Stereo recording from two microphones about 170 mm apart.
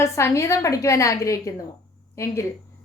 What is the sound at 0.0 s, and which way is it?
A woman's voice, 15° left (ahead or behind).